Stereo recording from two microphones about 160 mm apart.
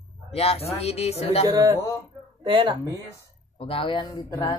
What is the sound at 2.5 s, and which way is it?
Speech, 30° right (ahead or behind).